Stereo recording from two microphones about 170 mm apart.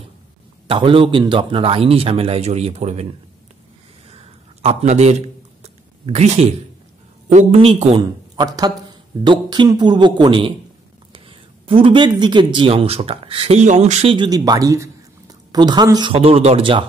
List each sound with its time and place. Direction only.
0.7 s speech: 30° right (ahead or behind)
4.1 s a sound: 35° right (ahead or behind)
7.3 s speech: 35° right (ahead or behind)
8.0 s a man's voice: 25° right (ahead or behind); by 14.1 s 45° right (ahead or behind)
14.1 s speech: 25° right (ahead or behind)